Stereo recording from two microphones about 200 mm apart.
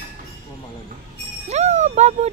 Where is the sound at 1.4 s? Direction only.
35° right (ahead or behind).